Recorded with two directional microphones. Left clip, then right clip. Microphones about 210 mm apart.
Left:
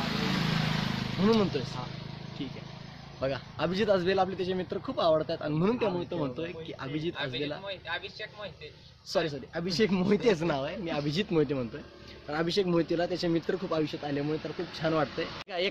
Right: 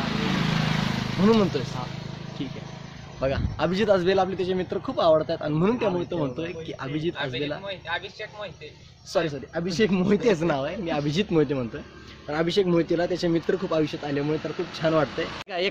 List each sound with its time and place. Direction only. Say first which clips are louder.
0.0 s vehicle: right 4 dB; 35° left (ahead or behind)
0.8 s vehicle: right 5 dB; 20° right (ahead or behind)
1.2 s speech: right 5 dB; centre (ahead or behind)
3.2 s speech: right 6 dB; centre (ahead or behind)
15.1 s speech: right 5 dB; 45° right (ahead or behind)